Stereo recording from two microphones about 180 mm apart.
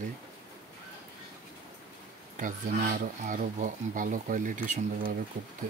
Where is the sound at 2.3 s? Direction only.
45° right (ahead or behind).